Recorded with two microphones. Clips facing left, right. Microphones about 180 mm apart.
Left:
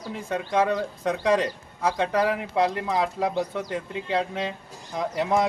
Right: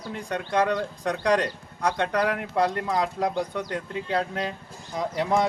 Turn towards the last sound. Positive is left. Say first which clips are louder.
# even
turn(degrees=0)  # may be behind; listen again after turning